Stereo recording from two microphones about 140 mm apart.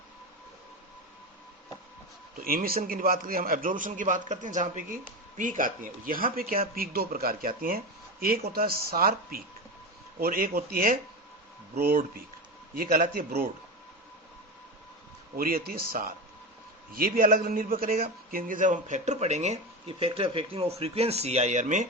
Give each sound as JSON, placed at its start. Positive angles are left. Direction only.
{"t": 2.4, "sound": "a man's voice", "side_deg": -90}
{"t": 15.4, "sound": "speech", "side_deg": -90}